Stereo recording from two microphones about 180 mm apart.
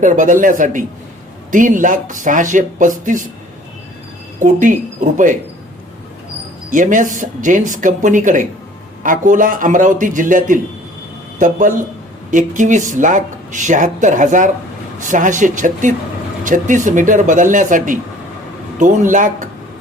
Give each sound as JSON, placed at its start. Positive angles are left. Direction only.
{"t": 0.0, "sound": "speech", "side_deg": -45}
{"t": 4.4, "sound": "speech", "side_deg": -45}
{"t": 6.7, "sound": "speech", "side_deg": -45}